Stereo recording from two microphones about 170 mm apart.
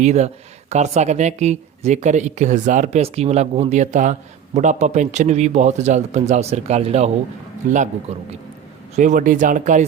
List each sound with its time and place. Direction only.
0.0 s speech: 40° right (ahead or behind)
8.1 s speech: 40° right (ahead or behind)
9.0 s speech: 50° right (ahead or behind)